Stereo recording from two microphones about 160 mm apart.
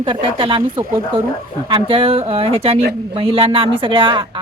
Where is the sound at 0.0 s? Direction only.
30° right (ahead or behind).